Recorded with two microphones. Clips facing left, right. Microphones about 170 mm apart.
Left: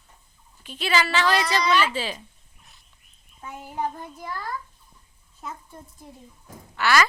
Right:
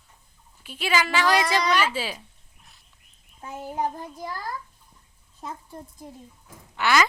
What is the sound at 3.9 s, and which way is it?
Speech, 35° right (ahead or behind).